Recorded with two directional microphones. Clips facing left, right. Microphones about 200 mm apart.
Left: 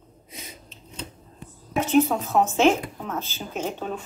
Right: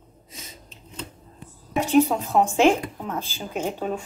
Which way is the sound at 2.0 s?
10° right (ahead or behind).